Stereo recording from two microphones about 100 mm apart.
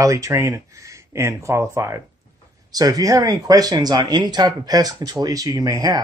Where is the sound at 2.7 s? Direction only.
40° right (ahead or behind).